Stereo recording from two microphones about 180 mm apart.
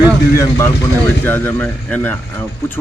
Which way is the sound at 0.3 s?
15° left (ahead or behind).